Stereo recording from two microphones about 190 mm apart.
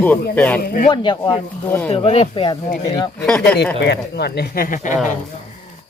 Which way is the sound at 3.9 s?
60° left (ahead or behind).